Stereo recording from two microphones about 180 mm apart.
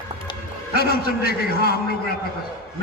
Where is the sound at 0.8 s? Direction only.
60° left (ahead or behind).